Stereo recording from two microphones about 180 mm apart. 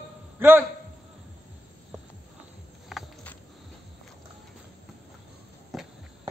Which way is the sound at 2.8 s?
Centre (ahead or behind).